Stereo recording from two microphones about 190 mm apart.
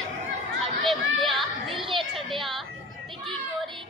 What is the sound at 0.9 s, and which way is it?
Chatter, centre (ahead or behind).